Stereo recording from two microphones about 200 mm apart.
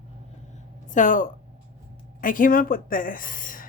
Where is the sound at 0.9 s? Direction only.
40° left (ahead or behind).